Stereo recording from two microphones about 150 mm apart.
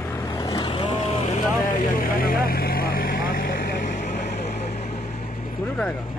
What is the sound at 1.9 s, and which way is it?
Vehicle, 75° left (ahead or behind).